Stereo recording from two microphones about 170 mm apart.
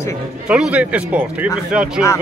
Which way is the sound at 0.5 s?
5° right (ahead or behind).